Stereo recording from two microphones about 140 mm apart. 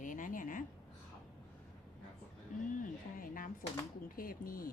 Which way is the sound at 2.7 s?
80° left.